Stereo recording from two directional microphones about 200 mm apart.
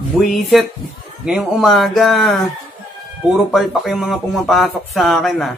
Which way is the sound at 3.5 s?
Centre (ahead or behind).